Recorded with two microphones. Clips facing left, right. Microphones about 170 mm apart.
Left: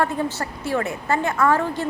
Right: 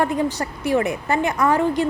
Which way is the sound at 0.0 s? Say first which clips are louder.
Right 2 dB; 15° right (ahead or behind).